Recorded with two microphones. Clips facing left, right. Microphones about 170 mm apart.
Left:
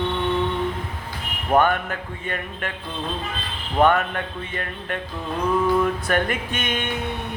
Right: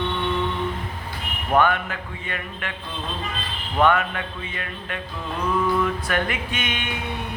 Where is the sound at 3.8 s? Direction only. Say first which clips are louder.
Left 1 dB; 45° left (ahead or behind).